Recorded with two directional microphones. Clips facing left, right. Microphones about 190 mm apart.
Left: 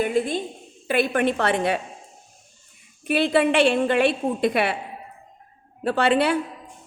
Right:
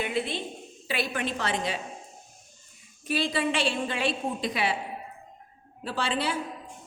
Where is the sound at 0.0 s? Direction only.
45° left (ahead or behind); by 1.8 s 60° left (ahead or behind).